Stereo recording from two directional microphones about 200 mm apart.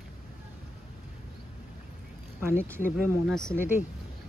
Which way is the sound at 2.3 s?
10° right (ahead or behind).